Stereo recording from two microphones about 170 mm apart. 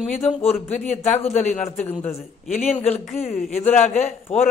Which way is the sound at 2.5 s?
40° left (ahead or behind).